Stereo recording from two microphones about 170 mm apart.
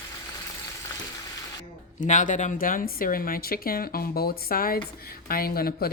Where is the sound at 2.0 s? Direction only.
50° left (ahead or behind).